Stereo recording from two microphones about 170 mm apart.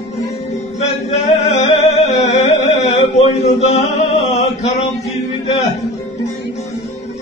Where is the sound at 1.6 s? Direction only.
40° left (ahead or behind).